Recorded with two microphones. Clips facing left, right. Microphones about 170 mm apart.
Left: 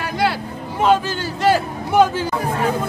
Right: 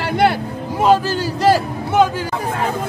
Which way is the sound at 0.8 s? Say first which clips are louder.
Right 2 dB; 35° right (ahead or behind).